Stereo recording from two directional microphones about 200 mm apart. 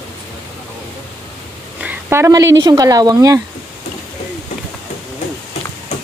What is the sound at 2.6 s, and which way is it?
Speech, 20° right (ahead or behind).